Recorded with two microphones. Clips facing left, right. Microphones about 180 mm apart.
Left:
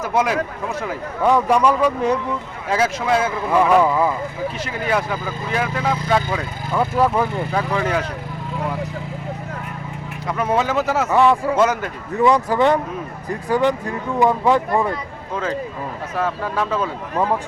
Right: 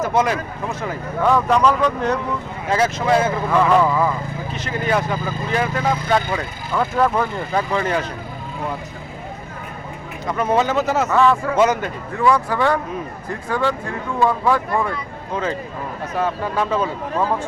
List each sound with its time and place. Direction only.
0.1 s speech: 10° left (ahead or behind)
10.2 s speech: 5° left (ahead or behind)
16.1 s speech: centre (ahead or behind)